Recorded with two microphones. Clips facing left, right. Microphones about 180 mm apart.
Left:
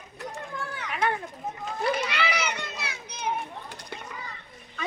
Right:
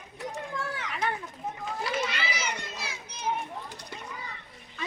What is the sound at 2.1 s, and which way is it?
Children playing, 65° left (ahead or behind).